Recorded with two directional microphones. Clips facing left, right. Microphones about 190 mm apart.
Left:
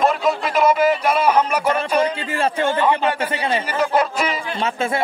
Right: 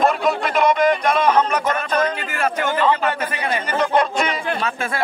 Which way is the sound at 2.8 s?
10° left (ahead or behind).